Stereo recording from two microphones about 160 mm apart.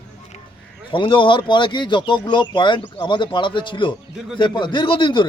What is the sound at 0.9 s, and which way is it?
Speech, 30° left (ahead or behind).